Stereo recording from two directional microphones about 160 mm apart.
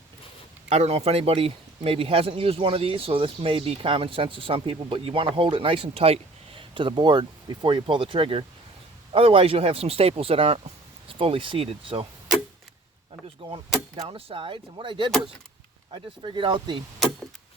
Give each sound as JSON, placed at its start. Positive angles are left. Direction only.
{"t": 0.7, "sound": "speech", "side_deg": -40}
{"t": 13.9, "sound": "speech", "side_deg": -35}